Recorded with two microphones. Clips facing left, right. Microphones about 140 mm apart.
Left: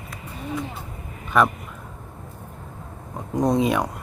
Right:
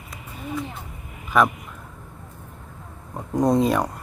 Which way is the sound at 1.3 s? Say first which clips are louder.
Even; centre (ahead or behind).